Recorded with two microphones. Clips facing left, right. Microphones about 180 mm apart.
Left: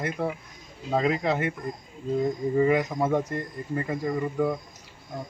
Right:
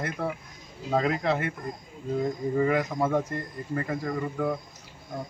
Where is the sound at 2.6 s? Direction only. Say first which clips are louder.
Left 2 dB; 15° left (ahead or behind).